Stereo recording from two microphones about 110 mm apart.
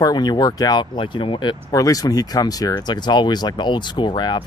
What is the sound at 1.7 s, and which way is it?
Speech, 30° left (ahead or behind).